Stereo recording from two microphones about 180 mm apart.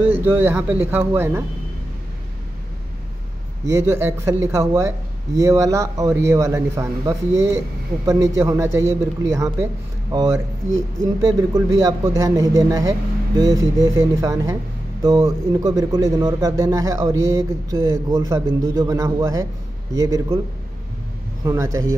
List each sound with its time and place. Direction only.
0.0 s speech: 10° right (ahead or behind)
3.6 s speech: 15° right (ahead or behind)
21.5 s speech: 15° right (ahead or behind)